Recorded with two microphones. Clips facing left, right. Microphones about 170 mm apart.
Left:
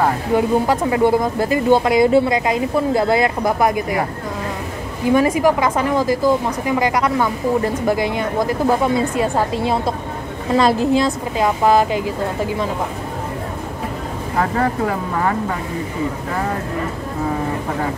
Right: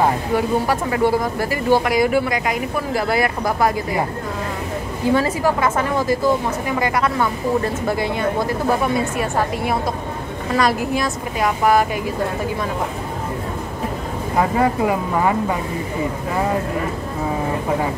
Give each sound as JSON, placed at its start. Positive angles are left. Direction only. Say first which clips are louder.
{"t": 0.3, "sound": "a woman's voice", "louder": "left 3 dB", "side_deg": 20}
{"t": 5.1, "sound": "a woman's voice", "louder": "left 4 dB", "side_deg": 15}
{"t": 10.5, "sound": "a woman's voice", "louder": "left 4 dB", "side_deg": 25}
{"t": 14.4, "sound": "speech", "louder": "right 1 dB", "side_deg": -15}